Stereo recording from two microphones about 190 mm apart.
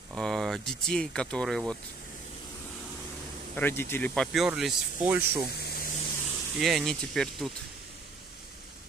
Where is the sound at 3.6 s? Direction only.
10° left (ahead or behind); by 5.2 s 5° right (ahead or behind).